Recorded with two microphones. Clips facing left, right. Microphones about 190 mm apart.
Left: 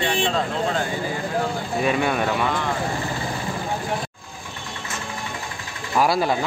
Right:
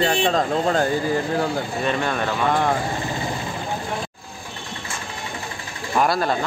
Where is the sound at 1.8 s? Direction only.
10° left (ahead or behind).